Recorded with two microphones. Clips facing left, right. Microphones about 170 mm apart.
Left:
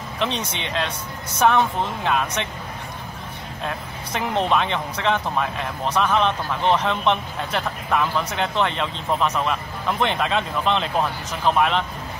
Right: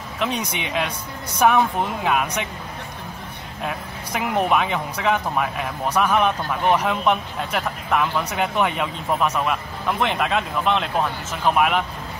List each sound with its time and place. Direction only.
0.2 s speech: 10° right (ahead or behind)
3.6 s speech: 10° right (ahead or behind)